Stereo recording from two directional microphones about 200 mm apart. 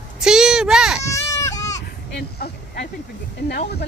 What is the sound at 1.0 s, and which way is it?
Baby cry, 15° left (ahead or behind).